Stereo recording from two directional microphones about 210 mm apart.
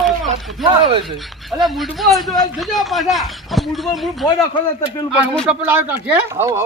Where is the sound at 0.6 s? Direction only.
25° right (ahead or behind).